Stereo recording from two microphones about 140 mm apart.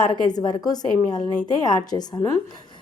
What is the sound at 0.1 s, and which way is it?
A woman's voice, 30° left (ahead or behind).